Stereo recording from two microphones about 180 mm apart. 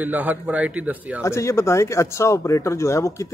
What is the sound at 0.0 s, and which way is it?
A man's voice, 10° right (ahead or behind).